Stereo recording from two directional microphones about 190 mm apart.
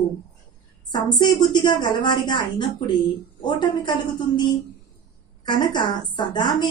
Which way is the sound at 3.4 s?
25° left (ahead or behind).